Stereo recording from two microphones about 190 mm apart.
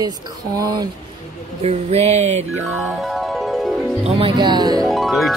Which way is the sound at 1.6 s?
35° right (ahead or behind).